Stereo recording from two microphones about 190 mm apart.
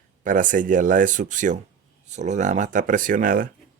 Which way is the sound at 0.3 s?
45° right (ahead or behind).